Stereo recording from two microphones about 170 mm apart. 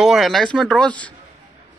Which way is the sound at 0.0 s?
Centre (ahead or behind).